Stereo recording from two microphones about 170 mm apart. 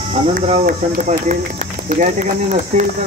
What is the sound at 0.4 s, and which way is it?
Speech, 40° right (ahead or behind).